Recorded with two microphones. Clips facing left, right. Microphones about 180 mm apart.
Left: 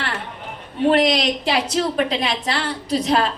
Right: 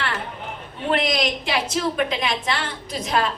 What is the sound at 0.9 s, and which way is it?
A woman's voice, 35° left (ahead or behind).